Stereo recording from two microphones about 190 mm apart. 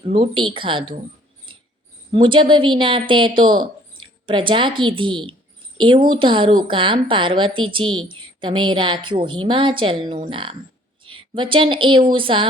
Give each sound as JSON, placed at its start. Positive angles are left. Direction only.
{"t": 0.0, "sound": "a woman's voice", "side_deg": -30}
{"t": 2.1, "sound": "a woman's voice", "side_deg": -25}